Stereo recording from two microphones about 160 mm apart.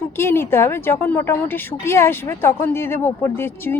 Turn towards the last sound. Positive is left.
turn(degrees=15)  # may be behind; listen again after turning